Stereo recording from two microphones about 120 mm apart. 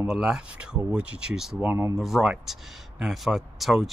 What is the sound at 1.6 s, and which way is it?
Speech, 20° right (ahead or behind).